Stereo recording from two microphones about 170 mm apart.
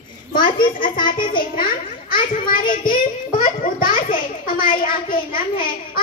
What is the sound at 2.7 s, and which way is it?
A child's voice, 50° left (ahead or behind).